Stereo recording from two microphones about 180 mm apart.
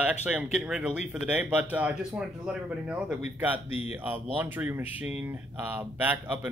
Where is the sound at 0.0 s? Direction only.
5° right (ahead or behind).